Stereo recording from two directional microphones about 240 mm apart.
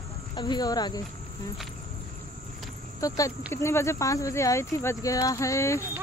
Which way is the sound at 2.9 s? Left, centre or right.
Centre.